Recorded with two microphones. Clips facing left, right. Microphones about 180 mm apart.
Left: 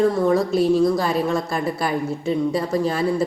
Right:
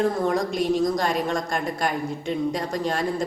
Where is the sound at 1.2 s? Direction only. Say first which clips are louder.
Left 4 dB; 5° left (ahead or behind).